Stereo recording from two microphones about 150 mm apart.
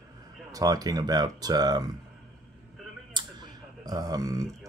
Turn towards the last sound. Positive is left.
turn(degrees=-20)  # may be behind; listen again after turning